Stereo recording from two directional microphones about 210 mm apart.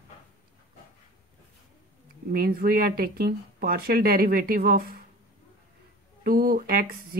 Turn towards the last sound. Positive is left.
turn(degrees=-45)  # may be behind; listen again after turning